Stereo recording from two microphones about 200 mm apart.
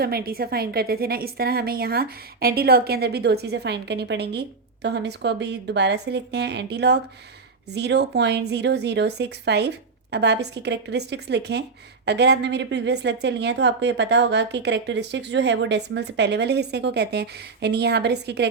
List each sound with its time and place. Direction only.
0.0 s a woman's voice: 50° right (ahead or behind)